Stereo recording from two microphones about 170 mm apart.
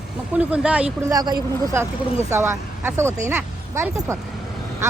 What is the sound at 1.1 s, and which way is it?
Speech, 25° right (ahead or behind).